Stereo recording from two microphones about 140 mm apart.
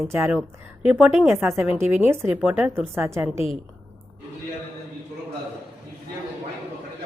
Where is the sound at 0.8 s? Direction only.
5° right (ahead or behind).